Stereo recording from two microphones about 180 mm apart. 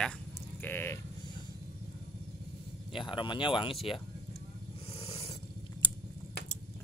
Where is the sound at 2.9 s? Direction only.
25° left (ahead or behind).